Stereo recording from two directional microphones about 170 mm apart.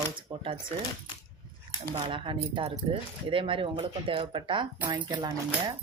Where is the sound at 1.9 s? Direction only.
30° right (ahead or behind).